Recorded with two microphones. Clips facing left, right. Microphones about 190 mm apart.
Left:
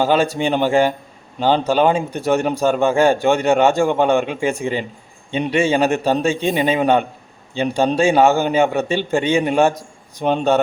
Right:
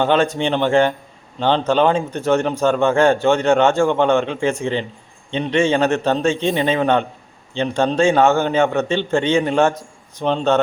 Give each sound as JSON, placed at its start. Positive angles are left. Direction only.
{"t": 0.0, "sound": "a man's voice", "side_deg": 5}